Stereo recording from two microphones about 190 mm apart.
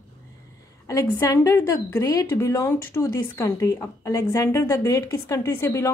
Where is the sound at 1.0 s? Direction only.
15° left (ahead or behind).